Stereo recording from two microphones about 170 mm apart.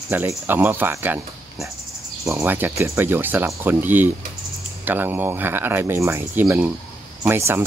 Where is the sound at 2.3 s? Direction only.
15° right (ahead or behind).